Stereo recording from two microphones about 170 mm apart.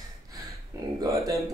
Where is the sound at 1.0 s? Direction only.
20° right (ahead or behind).